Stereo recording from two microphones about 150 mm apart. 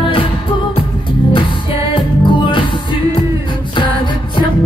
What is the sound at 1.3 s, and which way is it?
Music, 30° left (ahead or behind).